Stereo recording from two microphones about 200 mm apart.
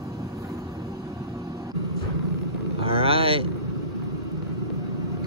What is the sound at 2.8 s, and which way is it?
Vehicle, 30° right (ahead or behind).